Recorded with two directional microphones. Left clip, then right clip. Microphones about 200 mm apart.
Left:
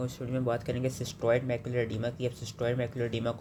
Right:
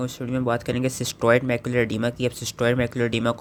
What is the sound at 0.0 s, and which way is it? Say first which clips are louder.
Speech: right 7 dB; 30° right (ahead or behind).